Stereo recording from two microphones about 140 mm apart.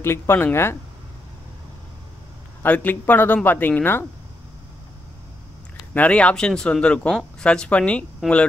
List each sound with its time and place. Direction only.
0.0 s speech: 15° left (ahead or behind)
2.6 s speech: 15° left (ahead or behind)
5.9 s speech: 10° left (ahead or behind)
8.2 s speech: 5° right (ahead or behind)